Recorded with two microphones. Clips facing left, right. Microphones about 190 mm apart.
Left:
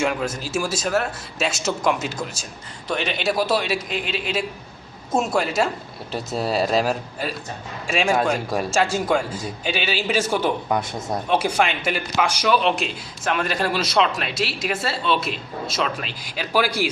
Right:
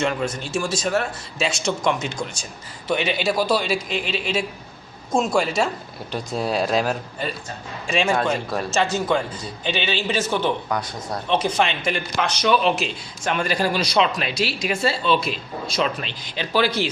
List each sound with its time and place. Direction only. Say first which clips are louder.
0.0 s a man's voice: even; 5° left (ahead or behind)
10.7 s a man's voice: left 3 dB; 25° left (ahead or behind)
11.3 s a man's voice: even; 10° left (ahead or behind)